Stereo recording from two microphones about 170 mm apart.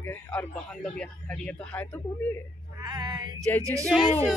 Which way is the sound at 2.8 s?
25° right (ahead or behind).